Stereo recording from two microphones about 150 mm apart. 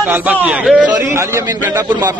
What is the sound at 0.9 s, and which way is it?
Speech, 20° right (ahead or behind).